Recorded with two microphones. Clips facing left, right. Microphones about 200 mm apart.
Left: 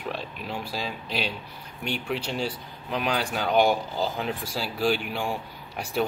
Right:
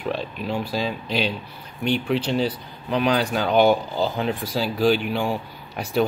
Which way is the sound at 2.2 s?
30° right (ahead or behind).